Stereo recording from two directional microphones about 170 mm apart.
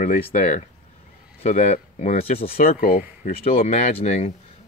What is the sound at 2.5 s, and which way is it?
Speech, 60° left (ahead or behind).